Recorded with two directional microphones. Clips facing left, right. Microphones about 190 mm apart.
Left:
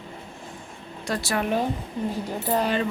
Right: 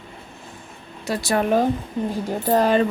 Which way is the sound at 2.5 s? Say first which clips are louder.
Right 6 dB; 45° right (ahead or behind).